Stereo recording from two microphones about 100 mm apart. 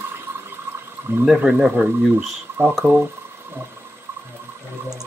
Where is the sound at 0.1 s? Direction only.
20° right (ahead or behind).